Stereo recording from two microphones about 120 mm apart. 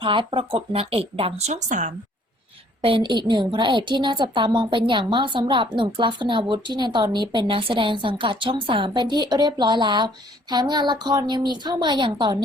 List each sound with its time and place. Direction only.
0.0 s a woman's voice: 45° right (ahead or behind); by 1.9 s 85° right
2.8 s a woman's voice: 45° right (ahead or behind)